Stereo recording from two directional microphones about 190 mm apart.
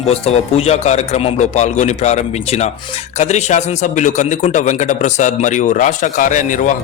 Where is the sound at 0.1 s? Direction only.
30° left (ahead or behind).